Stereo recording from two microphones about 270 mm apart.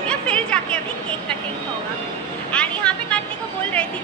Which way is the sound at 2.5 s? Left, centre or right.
Centre.